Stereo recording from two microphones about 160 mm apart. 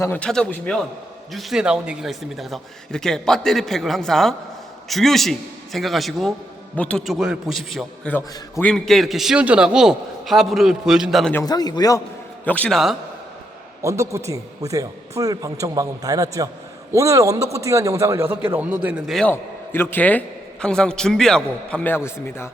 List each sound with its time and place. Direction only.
0.0 s a man's voice: 10° left (ahead or behind)
11.4 s a man's voice: 25° left (ahead or behind)
12.5 s a man's voice: 10° left (ahead or behind)
13.8 s speech: 20° right (ahead or behind); by 19.3 s centre (ahead or behind)
19.3 s a man's voice: 15° left (ahead or behind)